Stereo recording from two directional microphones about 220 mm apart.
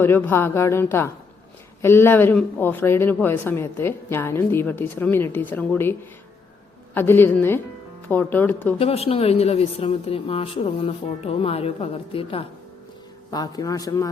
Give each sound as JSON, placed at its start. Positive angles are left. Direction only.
{"t": 0.0, "sound": "a man's voice", "side_deg": 10}
{"t": 8.8, "sound": "a man's voice", "side_deg": 25}